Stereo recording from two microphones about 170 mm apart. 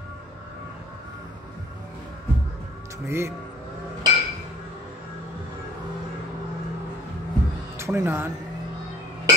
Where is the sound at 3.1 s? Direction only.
15° right (ahead or behind).